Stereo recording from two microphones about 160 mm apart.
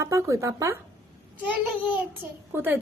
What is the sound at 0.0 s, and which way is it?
Speech, 20° right (ahead or behind).